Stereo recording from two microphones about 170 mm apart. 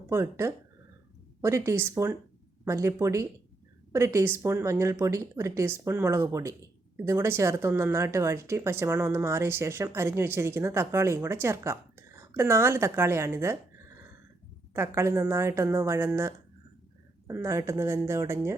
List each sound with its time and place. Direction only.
0.1 s speech: 15° right (ahead or behind)
14.7 s speech: 15° right (ahead or behind)